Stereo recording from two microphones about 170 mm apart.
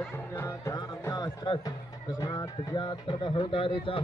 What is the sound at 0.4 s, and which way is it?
Music, 15° left (ahead or behind).